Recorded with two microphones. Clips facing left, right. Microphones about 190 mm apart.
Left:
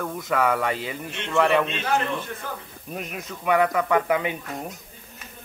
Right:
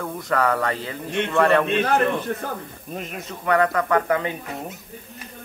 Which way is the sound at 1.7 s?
55° right (ahead or behind).